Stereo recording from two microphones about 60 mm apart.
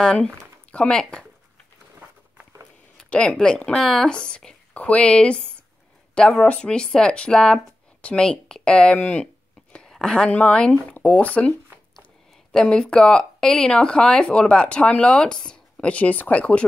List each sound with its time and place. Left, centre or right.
0.0 s speech: centre
3.1 s speech: centre
6.4 s speech: centre
12.5 s speech: centre